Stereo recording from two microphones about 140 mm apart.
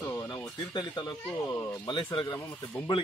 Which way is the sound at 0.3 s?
30° left (ahead or behind).